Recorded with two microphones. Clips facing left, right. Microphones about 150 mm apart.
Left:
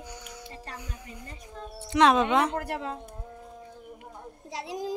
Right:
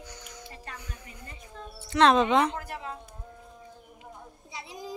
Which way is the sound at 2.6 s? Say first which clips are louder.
Left 5 dB; 70° left (ahead or behind).